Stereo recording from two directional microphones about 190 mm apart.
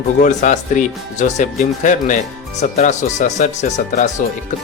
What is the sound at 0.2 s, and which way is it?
Speech, 40° left (ahead or behind).